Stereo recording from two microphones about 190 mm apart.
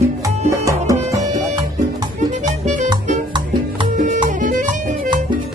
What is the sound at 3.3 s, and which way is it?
Music, 25° right (ahead or behind).